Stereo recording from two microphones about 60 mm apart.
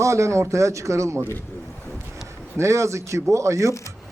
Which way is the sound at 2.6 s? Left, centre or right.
Right.